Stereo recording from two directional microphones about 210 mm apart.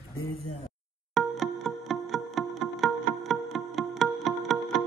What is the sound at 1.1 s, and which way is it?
Music, centre (ahead or behind).